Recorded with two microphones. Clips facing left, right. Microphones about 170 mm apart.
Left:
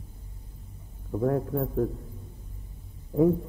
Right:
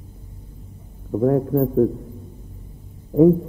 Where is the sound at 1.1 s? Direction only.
30° right (ahead or behind).